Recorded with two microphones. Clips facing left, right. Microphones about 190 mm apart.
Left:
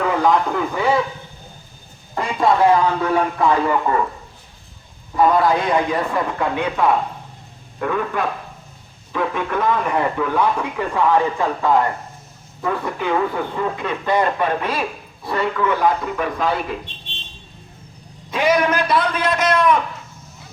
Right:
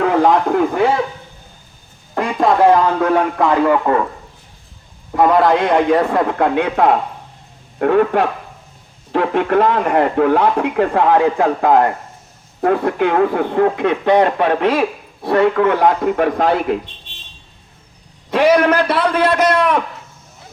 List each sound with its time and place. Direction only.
0.0 s a sound: 55° right (ahead or behind)
2.4 s speech: 45° right (ahead or behind)
5.1 s speech: 65° right (ahead or behind)
18.6 s speech: 60° right (ahead or behind)